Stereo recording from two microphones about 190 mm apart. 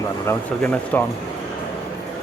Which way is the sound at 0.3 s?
10° left (ahead or behind).